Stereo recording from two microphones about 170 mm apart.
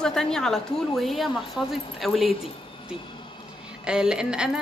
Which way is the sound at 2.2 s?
35° left (ahead or behind).